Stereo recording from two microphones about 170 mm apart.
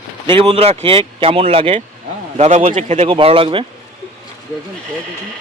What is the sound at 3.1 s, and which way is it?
Speech, 30° right (ahead or behind).